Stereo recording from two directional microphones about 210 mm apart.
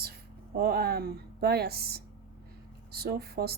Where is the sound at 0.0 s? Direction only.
45° right (ahead or behind).